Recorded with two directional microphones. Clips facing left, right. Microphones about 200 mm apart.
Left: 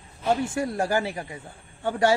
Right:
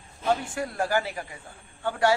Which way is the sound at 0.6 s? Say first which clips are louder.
Left 2 dB; 25° left (ahead or behind).